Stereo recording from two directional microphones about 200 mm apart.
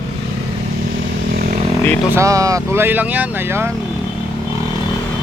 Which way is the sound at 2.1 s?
15° right (ahead or behind).